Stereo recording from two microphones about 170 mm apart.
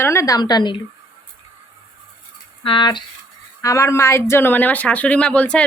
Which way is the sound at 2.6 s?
30° left (ahead or behind).